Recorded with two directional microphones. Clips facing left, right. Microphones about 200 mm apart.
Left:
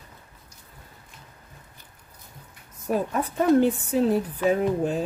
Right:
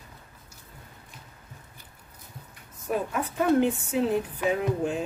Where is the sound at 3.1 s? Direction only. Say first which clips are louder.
Left 4 dB; 35° left (ahead or behind).